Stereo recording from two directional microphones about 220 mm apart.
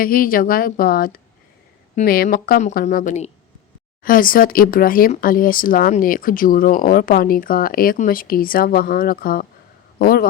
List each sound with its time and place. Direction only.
0.0 s a man's voice: 40° left (ahead or behind)